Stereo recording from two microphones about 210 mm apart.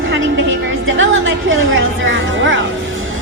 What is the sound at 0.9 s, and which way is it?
A woman's voice, 65° right (ahead or behind).